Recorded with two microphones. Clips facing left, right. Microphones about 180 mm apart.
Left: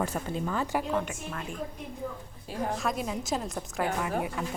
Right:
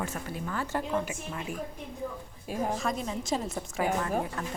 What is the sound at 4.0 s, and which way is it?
Speech, 15° left (ahead or behind).